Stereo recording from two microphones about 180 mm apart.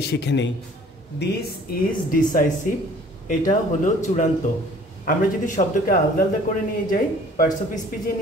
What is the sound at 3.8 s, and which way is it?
Speech, 45° left (ahead or behind).